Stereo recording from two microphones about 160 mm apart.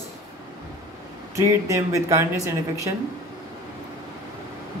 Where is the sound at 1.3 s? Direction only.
20° right (ahead or behind).